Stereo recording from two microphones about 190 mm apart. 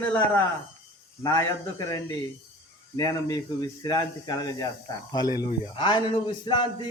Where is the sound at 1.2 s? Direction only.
15° left (ahead or behind).